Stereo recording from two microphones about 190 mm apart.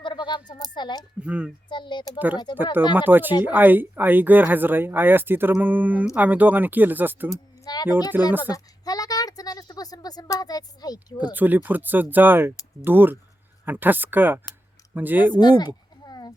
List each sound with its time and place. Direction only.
0.0 s speech: 25° left (ahead or behind)
1.2 s speech: 5° right (ahead or behind)
1.7 s speech: 25° left (ahead or behind)
2.1 s speech: 10° right (ahead or behind)
7.3 s a sound: 20° left (ahead or behind)
8.1 s speech: 10° right (ahead or behind)
8.5 s speech: 20° left (ahead or behind)
11.3 s speech: 10° right (ahead or behind)
15.4 s a sound: 20° left (ahead or behind)